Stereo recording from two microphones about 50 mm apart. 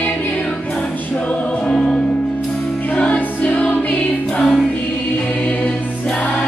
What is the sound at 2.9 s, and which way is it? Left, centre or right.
Music, left.